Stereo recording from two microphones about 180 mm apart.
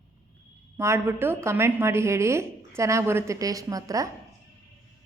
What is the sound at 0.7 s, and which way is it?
A woman's voice, 15° right (ahead or behind).